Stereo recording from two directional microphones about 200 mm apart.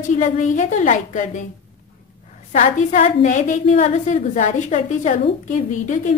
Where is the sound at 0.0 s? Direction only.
40° left (ahead or behind).